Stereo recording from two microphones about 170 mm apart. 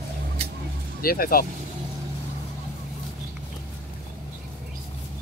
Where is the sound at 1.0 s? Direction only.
60° left (ahead or behind).